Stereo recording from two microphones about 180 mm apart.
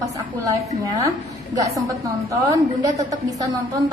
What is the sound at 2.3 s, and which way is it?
Speech, 20° right (ahead or behind).